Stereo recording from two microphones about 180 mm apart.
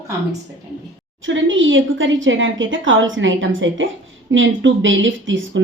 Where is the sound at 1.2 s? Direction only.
90° right.